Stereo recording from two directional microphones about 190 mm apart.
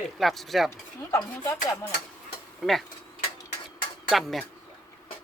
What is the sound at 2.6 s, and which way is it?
Speech, centre (ahead or behind).